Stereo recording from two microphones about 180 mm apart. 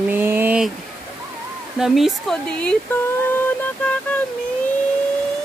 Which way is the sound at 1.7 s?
Centre (ahead or behind).